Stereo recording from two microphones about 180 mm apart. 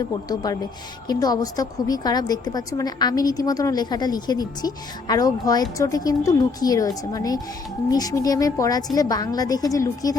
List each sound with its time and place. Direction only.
1.0 s a woman's voice: 20° left (ahead or behind)